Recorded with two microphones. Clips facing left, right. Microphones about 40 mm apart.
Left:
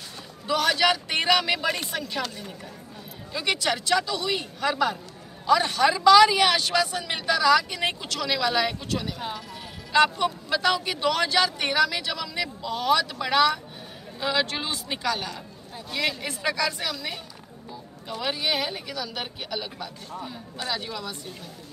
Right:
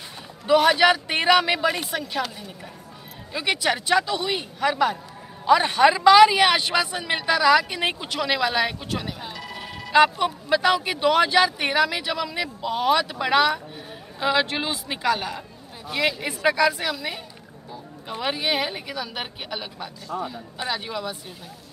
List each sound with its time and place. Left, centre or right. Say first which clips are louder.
0.5 s a man's voice: right 5 dB; centre
1.7 s speech: right 2 dB; centre
3.3 s speech: right 2 dB; centre
20.1 s speech: right 8 dB; right
20.5 s speech: right 2 dB; centre